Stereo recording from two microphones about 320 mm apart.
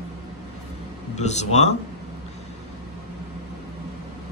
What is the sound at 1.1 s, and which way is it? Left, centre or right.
Speech, left.